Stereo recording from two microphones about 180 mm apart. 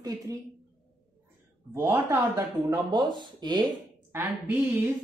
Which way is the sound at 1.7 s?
10° right (ahead or behind).